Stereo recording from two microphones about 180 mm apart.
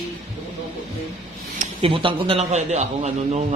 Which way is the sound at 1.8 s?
30° right (ahead or behind).